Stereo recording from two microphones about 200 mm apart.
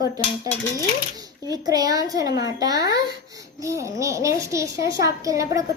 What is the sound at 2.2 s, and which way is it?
Speech, 60° left (ahead or behind).